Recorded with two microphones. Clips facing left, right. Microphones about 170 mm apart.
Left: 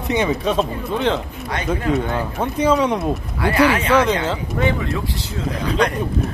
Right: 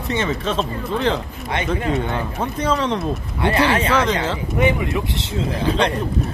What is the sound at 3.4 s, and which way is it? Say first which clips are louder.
Speech: left 1 dB; 30° right (ahead or behind).